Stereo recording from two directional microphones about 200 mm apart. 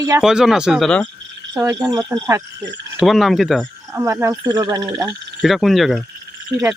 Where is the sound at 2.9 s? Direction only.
Centre (ahead or behind).